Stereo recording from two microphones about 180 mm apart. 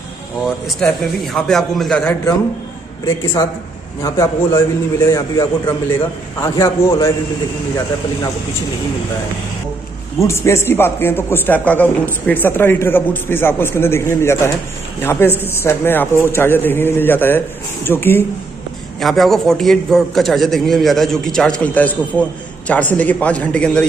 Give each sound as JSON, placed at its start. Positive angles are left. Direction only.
{"t": 0.7, "sound": "a man's voice", "side_deg": 5}
{"t": 4.0, "sound": "a man's voice", "side_deg": 15}
{"t": 10.2, "sound": "a man's voice", "side_deg": 15}
{"t": 18.9, "sound": "a man's voice", "side_deg": 0}